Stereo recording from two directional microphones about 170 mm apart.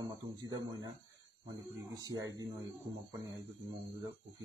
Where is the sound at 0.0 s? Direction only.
20° right (ahead or behind).